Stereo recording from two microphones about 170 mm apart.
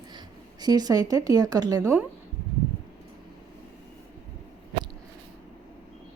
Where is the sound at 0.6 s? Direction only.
25° right (ahead or behind).